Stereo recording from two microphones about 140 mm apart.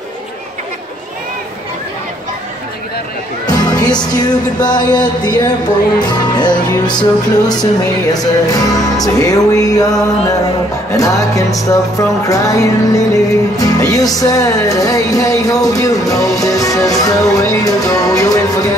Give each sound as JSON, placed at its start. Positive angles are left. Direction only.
{"t": 3.4, "sound": "music", "side_deg": 30}